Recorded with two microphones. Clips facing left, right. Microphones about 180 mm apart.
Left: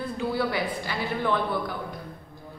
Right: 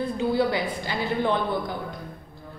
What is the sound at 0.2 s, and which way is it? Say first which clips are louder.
A woman's voice: right 3 dB; 25° right (ahead or behind).